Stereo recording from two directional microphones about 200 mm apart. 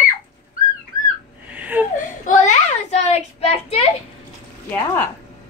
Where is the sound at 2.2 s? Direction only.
40° left (ahead or behind).